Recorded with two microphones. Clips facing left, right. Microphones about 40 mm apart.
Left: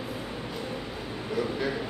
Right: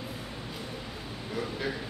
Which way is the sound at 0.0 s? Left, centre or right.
Centre.